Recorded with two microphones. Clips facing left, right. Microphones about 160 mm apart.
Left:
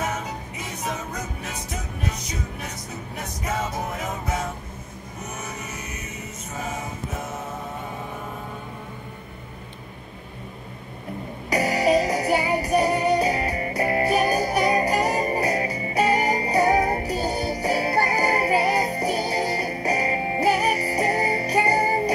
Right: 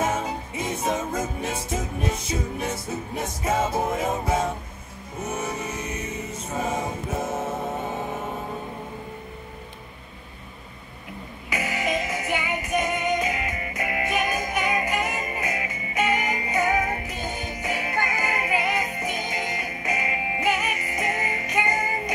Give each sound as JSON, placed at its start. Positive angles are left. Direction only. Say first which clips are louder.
{"t": 0.0, "sound": "music", "louder": "right 3 dB", "side_deg": -25}
{"t": 11.5, "sound": "music", "louder": "left 7 dB", "side_deg": 35}